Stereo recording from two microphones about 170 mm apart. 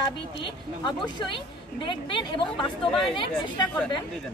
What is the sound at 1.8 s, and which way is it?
Speech, 30° left (ahead or behind).